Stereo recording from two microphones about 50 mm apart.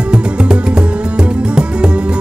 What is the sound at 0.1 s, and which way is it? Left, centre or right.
Music, centre.